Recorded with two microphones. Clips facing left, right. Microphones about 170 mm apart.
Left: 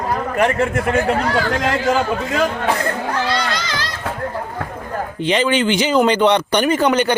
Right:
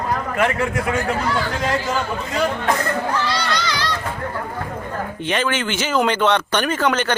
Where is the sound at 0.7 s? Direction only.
60° left (ahead or behind).